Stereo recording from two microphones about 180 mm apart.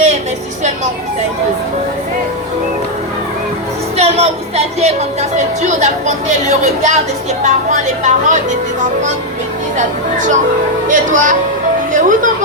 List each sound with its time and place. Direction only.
3.9 s a woman's voice: 35° right (ahead or behind)
9.7 s speech: 45° right (ahead or behind)
11.9 s music: 45° right (ahead or behind)